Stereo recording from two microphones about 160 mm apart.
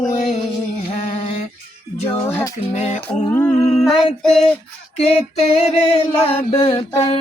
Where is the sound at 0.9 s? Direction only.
40° left (ahead or behind).